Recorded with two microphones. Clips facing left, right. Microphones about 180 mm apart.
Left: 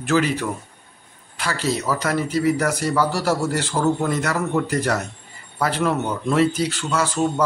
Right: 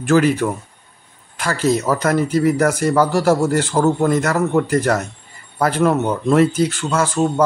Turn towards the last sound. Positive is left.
turn(degrees=-50)  # may be behind; listen again after turning